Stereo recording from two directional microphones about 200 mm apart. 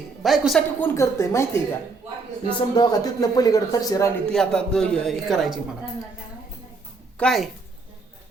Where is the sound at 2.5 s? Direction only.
20° left (ahead or behind).